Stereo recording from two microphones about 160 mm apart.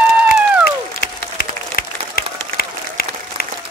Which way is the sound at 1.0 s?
70° left (ahead or behind).